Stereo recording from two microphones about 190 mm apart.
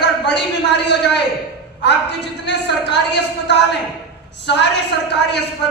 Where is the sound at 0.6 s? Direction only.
65° left (ahead or behind).